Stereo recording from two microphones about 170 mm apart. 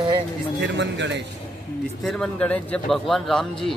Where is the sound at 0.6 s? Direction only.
90° right.